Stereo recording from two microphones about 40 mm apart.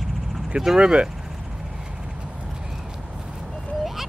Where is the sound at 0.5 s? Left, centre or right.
Centre.